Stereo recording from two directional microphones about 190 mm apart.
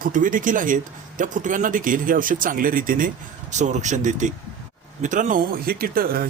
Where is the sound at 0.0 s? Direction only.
45° right (ahead or behind).